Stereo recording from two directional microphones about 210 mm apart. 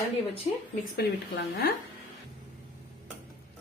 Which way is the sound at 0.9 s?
50° left (ahead or behind).